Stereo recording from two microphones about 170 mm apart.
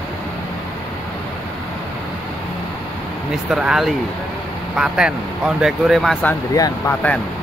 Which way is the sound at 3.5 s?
5° right (ahead or behind).